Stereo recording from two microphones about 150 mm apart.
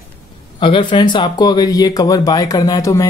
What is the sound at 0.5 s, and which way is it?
Speech, 35° left (ahead or behind).